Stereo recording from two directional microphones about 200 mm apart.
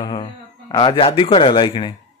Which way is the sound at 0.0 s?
20° left (ahead or behind).